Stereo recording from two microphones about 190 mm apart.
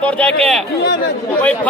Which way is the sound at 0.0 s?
5° left (ahead or behind).